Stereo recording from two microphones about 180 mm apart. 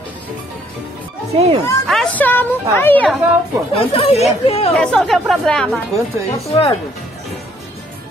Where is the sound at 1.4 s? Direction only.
35° right (ahead or behind).